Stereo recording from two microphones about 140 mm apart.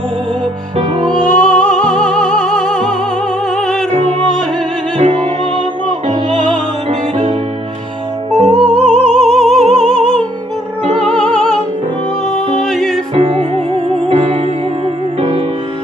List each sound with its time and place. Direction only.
1.4 s music: 5° left (ahead or behind)
4.9 s music: 50° right (ahead or behind)
8.4 s music: 50° right (ahead or behind)
8.8 s music: 5° left (ahead or behind)
12.6 s music: 5° left (ahead or behind)
13.1 s music: 45° right (ahead or behind)